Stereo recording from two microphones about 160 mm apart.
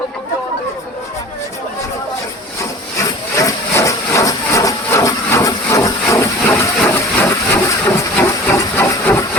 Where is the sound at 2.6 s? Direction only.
20° left (ahead or behind).